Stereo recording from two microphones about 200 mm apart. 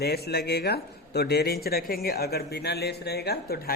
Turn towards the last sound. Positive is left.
turn(degrees=50)  # may be behind; listen again after turning